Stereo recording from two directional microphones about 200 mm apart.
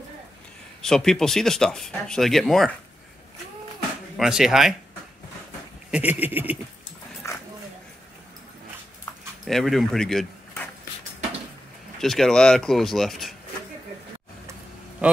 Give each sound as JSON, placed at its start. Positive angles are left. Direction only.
{"t": 0.8, "sound": "speech", "side_deg": 0}
{"t": 4.2, "sound": "speech", "side_deg": -5}
{"t": 5.9, "sound": "a sound", "side_deg": -5}
{"t": 7.2, "sound": "a sound", "side_deg": 15}
{"t": 9.4, "sound": "speech", "side_deg": 0}
{"t": 12.0, "sound": "speech", "side_deg": 0}